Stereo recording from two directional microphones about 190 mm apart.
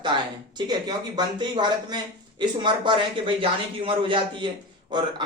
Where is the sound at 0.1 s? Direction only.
25° right (ahead or behind).